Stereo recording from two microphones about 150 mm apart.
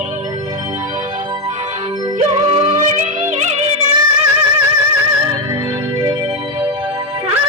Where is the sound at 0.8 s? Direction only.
55° right (ahead or behind).